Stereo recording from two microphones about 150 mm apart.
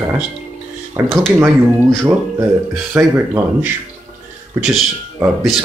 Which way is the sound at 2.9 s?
20° right (ahead or behind).